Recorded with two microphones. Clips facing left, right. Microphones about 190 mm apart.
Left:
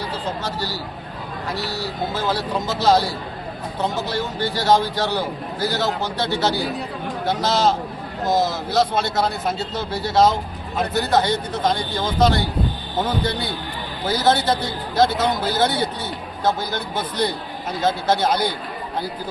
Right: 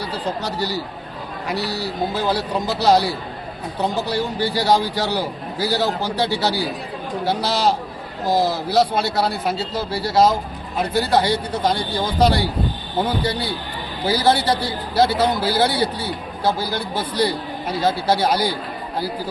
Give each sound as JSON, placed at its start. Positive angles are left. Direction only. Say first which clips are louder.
{"t": 0.4, "sound": "a man's voice", "louder": "right 3 dB", "side_deg": -15}
{"t": 7.4, "sound": "a man's voice", "louder": "left 4 dB", "side_deg": -15}